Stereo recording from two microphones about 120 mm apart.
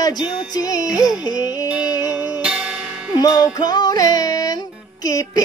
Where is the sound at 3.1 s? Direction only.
30° left (ahead or behind).